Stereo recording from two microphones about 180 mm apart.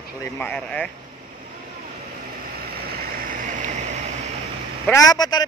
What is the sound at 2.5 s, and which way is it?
Vehicle, 55° right (ahead or behind).